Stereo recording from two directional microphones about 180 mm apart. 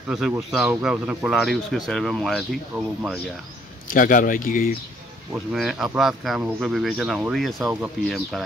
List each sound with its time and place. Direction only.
0.1 s speech: 5° right (ahead or behind)
3.8 s speech: 50° left (ahead or behind)
5.3 s speech: centre (ahead or behind)